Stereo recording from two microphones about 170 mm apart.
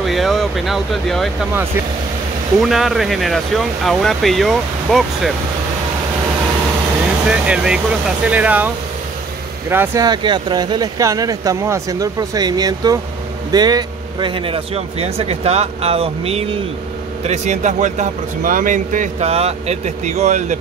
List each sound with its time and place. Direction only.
0.0 s speech: centre (ahead or behind)
2.6 s speech: centre (ahead or behind)
7.2 s speech: 5° right (ahead or behind)
10.0 s a man's voice: 25° right (ahead or behind); by 20.5 s 45° right (ahead or behind)